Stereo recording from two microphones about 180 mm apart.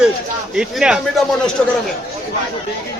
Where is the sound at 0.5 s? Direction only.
5° right (ahead or behind).